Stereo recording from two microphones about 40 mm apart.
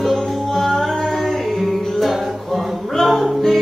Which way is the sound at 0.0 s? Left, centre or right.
Centre.